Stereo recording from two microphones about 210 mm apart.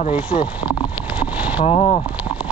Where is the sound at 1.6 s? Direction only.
30° left (ahead or behind).